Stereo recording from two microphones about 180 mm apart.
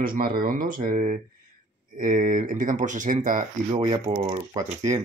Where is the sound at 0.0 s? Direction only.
55° right (ahead or behind).